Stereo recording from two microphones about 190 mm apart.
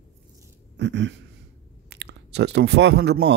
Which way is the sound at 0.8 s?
70° right (ahead or behind).